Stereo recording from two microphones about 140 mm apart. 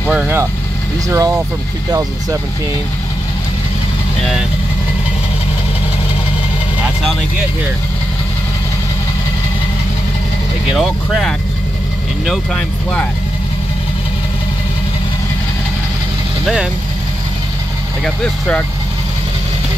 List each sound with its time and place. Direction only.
0.1 s speech: 5° right (ahead or behind)
1.0 s speech: 25° right (ahead or behind)
10.7 s speech: centre (ahead or behind)
18.0 s speech: 5° left (ahead or behind)